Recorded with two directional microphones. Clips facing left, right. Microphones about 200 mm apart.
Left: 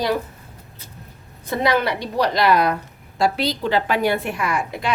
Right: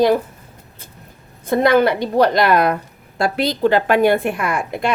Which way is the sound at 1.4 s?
50° right (ahead or behind).